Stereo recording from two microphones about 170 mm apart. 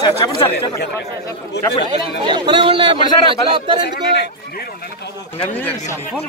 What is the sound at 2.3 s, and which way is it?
A man's voice, 25° right (ahead or behind).